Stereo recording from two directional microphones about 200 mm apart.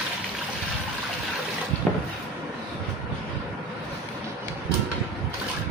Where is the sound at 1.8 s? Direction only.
5° left (ahead or behind).